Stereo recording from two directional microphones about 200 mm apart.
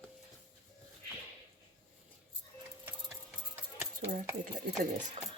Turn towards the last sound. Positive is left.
turn(degrees=-35)  # may be behind; listen again after turning